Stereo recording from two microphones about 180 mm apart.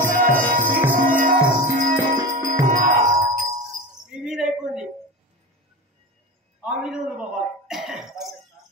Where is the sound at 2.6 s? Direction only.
45° right (ahead or behind).